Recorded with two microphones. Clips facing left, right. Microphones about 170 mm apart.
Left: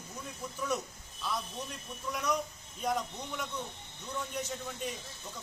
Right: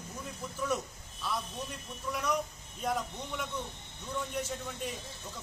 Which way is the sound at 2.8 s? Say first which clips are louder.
Even; centre (ahead or behind).